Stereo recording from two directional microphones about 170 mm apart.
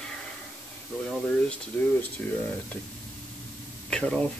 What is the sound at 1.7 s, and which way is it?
Speech, 10° left (ahead or behind).